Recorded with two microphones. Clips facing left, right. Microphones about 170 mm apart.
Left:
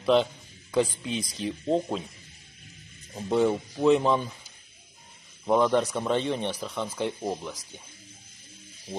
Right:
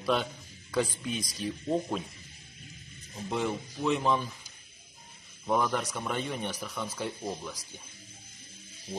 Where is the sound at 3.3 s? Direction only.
35° left (ahead or behind).